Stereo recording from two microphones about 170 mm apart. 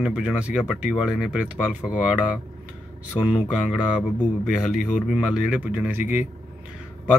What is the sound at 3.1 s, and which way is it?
Speech, 30° left (ahead or behind).